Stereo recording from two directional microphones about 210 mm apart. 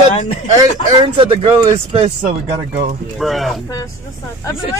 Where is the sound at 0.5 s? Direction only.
20° right (ahead or behind).